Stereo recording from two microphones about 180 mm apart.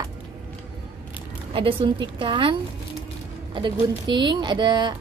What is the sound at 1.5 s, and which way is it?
Speech, 30° right (ahead or behind).